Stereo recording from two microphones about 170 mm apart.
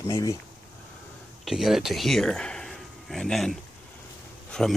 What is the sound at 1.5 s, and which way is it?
Speech, centre (ahead or behind).